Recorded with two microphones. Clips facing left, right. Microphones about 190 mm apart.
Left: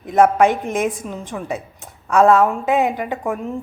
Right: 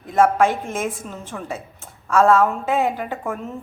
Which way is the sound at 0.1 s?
20° left (ahead or behind).